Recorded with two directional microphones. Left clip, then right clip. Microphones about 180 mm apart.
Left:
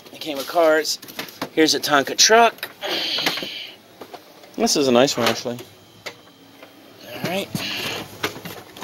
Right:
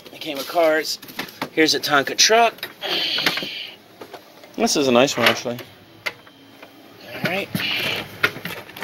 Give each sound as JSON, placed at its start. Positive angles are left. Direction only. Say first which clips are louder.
{"t": 0.1, "sound": "door", "louder": "left 1 dB", "side_deg": 20}
{"t": 4.6, "sound": "speech", "louder": "even", "side_deg": 10}
{"t": 7.1, "sound": "a sound", "louder": "right 2 dB", "side_deg": 20}